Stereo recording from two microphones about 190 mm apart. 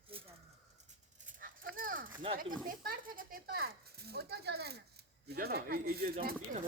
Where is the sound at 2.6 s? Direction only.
50° right (ahead or behind).